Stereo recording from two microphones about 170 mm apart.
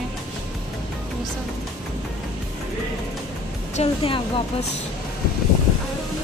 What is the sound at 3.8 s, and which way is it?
Speech, 30° left (ahead or behind).